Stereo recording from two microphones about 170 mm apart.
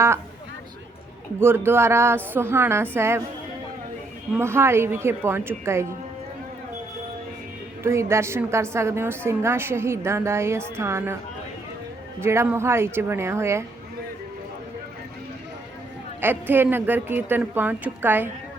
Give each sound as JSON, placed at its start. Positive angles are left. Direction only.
{"t": 1.4, "sound": "a woman's voice", "side_deg": -15}
{"t": 4.4, "sound": "a woman's voice", "side_deg": -15}
{"t": 7.9, "sound": "a woman's voice", "side_deg": -15}
{"t": 12.2, "sound": "a woman's voice", "side_deg": -15}
{"t": 16.2, "sound": "a woman's voice", "side_deg": -10}